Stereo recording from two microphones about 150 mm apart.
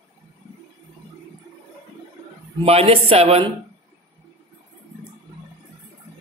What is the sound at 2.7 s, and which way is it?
Speech, 40° right (ahead or behind).